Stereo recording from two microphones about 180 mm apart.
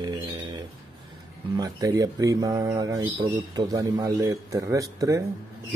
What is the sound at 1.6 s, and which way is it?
A man's voice, 20° right (ahead or behind).